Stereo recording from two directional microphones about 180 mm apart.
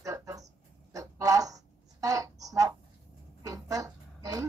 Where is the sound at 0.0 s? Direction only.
20° right (ahead or behind).